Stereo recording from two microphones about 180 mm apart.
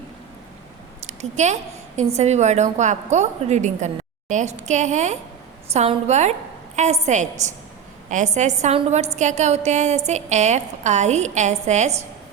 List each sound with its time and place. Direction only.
1.0 s a woman's voice: 40° right (ahead or behind)